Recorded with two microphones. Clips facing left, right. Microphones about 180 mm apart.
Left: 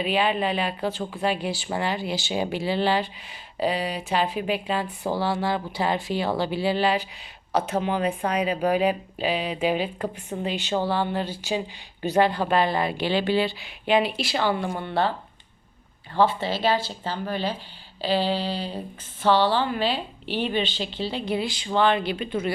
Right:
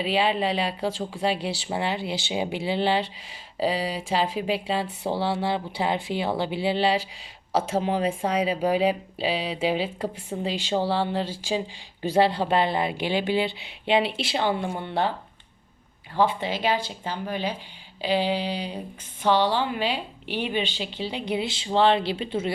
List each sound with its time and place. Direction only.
0.0 s speech: 30° right (ahead or behind)
0.9 s speech: 90° right
1.4 s speech: 75° right (ahead or behind)
1.6 s speech: 25° right (ahead or behind)
3.6 s speech: 35° right (ahead or behind)
10.5 s speech: 90° right
10.8 s a woman's voice: 30° right (ahead or behind)
16.1 s a woman's voice: 15° right (ahead or behind)